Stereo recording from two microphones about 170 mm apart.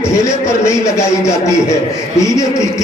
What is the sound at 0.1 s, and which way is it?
A man's voice, 15° left (ahead or behind).